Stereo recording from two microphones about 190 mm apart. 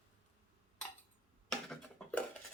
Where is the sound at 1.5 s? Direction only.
Centre (ahead or behind).